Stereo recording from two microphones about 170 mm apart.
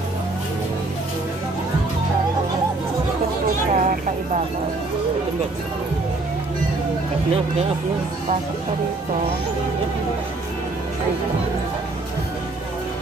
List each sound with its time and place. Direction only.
3.7 s music: 50° right (ahead or behind)